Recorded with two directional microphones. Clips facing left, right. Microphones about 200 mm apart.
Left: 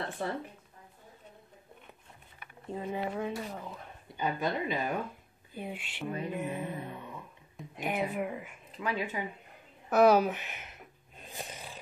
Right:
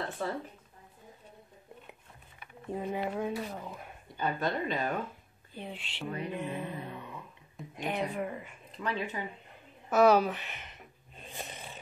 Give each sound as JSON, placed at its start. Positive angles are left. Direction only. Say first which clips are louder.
{"t": 0.2, "sound": "speech", "louder": "even", "side_deg": 20}
{"t": 2.7, "sound": "a woman's voice", "louder": "right 1 dB", "side_deg": -10}
{"t": 4.2, "sound": "speech", "louder": "even", "side_deg": 10}
{"t": 7.0, "sound": "music", "louder": "even", "side_deg": 10}
{"t": 7.5, "sound": "a woman's voice", "louder": "left 1 dB", "side_deg": 5}
{"t": 11.3, "sound": "a sound", "louder": "left 1 dB", "side_deg": 0}